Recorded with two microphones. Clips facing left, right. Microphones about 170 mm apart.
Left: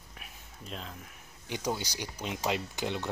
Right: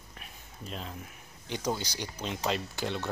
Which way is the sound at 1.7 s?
10° left (ahead or behind).